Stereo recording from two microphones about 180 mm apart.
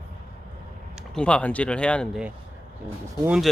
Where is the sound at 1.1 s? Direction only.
5° left (ahead or behind).